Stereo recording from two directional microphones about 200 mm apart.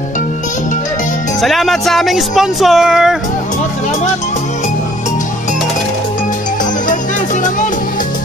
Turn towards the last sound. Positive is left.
turn(degrees=40)  # may be behind; listen again after turning